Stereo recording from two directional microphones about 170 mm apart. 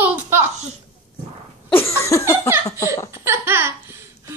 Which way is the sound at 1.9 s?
20° left (ahead or behind).